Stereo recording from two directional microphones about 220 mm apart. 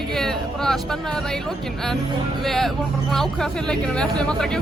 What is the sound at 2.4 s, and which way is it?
Speech, centre (ahead or behind).